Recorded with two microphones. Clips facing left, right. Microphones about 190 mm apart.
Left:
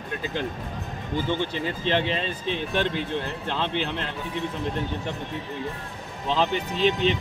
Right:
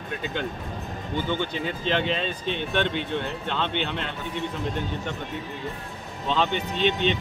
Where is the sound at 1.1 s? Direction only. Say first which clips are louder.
Left 1 dB; centre (ahead or behind).